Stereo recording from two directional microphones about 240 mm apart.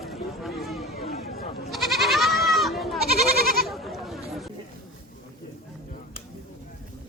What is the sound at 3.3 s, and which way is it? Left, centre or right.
Goat, right.